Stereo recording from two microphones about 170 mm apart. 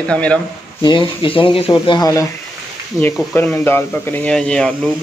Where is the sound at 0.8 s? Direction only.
30° left (ahead or behind).